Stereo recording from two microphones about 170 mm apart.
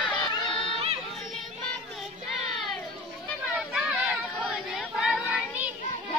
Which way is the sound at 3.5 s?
5° right (ahead or behind).